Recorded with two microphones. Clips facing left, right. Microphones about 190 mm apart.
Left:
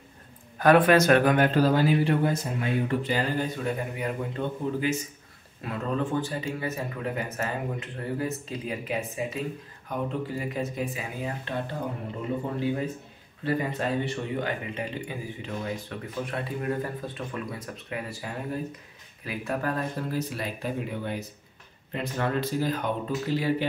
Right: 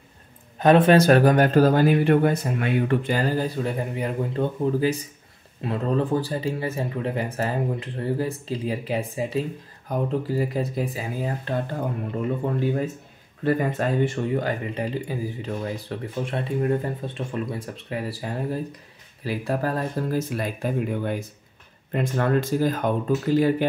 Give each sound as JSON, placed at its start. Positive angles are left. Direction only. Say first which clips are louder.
{"t": 0.6, "sound": "speech", "louder": "right 3 dB", "side_deg": -25}
{"t": 13.4, "sound": "speech", "louder": "right 5 dB", "side_deg": -50}